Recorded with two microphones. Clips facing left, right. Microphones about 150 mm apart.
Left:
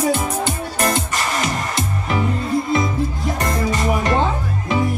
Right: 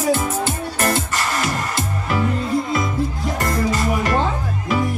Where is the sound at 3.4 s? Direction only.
20° left (ahead or behind).